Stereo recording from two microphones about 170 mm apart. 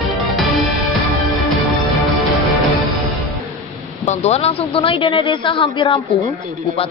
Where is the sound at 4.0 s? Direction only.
40° left (ahead or behind).